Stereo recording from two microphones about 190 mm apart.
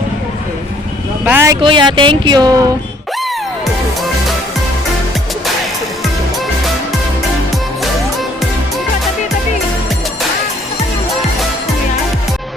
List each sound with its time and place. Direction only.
1.2 s speech: 10° right (ahead or behind)
1.6 s speech: 25° right (ahead or behind)